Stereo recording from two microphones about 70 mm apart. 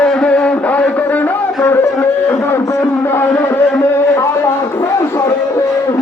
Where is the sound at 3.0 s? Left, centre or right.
Left.